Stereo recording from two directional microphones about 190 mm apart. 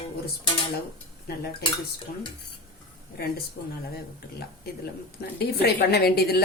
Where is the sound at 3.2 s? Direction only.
55° left (ahead or behind).